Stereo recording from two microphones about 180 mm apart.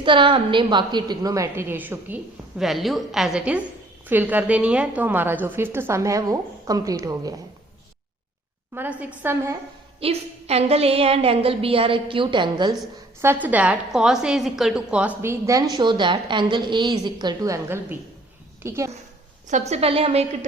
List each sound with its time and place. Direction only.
0.0 s a woman's voice: 25° right (ahead or behind)
8.7 s a woman's voice: 10° right (ahead or behind)
10.0 s a woman's voice: 35° right (ahead or behind)
13.2 s a woman's voice: 10° right (ahead or behind)
19.5 s a woman's voice: 40° right (ahead or behind)